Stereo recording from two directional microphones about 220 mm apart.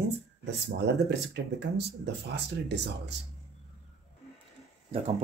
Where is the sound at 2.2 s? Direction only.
50° right (ahead or behind).